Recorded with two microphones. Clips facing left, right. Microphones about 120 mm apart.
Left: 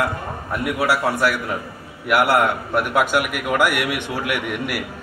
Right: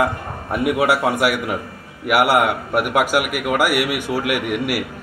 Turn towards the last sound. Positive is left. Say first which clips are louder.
# right 3 dB
turn(degrees=-5)  # may be behind; listen again after turning